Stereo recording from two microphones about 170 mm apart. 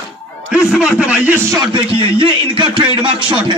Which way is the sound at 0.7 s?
5° right (ahead or behind).